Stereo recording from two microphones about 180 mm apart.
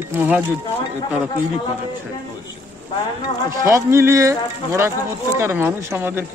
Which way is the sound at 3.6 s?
15° right (ahead or behind).